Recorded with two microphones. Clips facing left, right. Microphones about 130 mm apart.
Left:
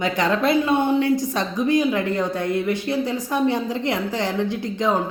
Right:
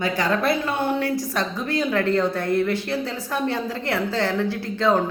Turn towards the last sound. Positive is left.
turn(degrees=15)  # may be behind; listen again after turning